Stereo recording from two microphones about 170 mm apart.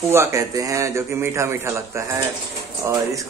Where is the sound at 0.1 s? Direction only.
15° right (ahead or behind).